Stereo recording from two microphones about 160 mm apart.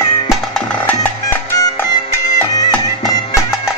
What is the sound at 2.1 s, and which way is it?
Music, 20° left (ahead or behind).